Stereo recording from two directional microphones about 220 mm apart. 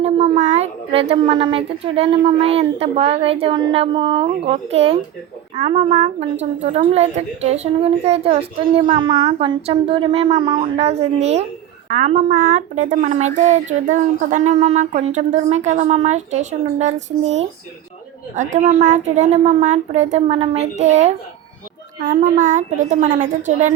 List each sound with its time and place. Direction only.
0.0 s a woman's voice: 30° right (ahead or behind)